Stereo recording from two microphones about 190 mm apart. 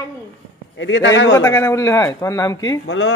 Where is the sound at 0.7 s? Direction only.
75° left (ahead or behind).